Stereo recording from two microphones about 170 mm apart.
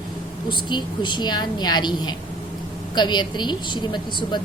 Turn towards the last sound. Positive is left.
turn(degrees=25)  # may be behind; listen again after turning